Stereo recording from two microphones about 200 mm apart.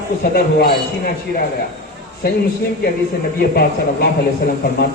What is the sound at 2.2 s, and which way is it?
Speech, 50° left (ahead or behind).